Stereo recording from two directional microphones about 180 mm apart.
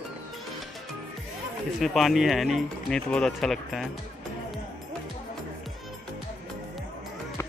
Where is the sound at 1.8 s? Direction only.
Centre (ahead or behind).